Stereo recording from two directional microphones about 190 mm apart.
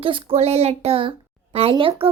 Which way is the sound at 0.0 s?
25° right (ahead or behind).